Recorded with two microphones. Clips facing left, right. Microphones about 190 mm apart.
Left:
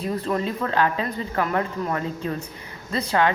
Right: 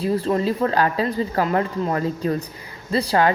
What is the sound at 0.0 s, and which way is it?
Speech, 30° right (ahead or behind).